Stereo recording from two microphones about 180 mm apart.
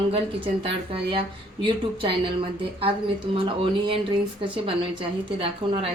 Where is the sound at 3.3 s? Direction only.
30° right (ahead or behind).